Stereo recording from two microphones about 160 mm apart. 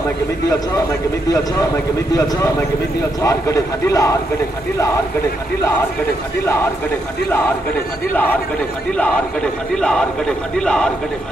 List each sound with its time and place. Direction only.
3.2 s a man's voice: 20° left (ahead or behind)
9.8 s speech: 5° left (ahead or behind)